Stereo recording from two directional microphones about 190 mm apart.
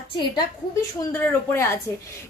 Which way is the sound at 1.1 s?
10° left (ahead or behind).